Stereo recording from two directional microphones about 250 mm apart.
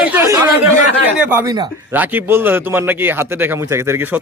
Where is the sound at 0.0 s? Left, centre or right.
Centre.